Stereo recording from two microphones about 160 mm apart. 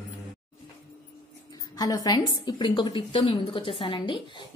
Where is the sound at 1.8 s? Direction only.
25° left (ahead or behind).